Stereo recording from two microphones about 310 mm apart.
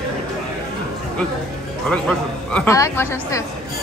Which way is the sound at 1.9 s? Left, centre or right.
Centre.